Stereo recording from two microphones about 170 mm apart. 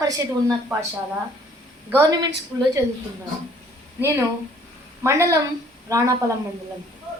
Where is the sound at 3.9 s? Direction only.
15° right (ahead or behind).